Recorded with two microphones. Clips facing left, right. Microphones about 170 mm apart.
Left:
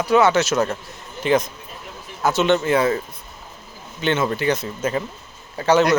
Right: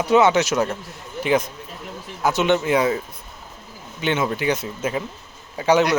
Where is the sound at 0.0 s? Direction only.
20° right (ahead or behind).